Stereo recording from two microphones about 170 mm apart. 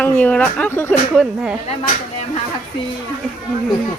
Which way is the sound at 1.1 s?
Centre (ahead or behind).